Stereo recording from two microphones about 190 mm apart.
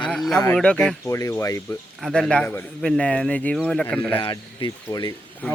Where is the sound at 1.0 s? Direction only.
15° left (ahead or behind).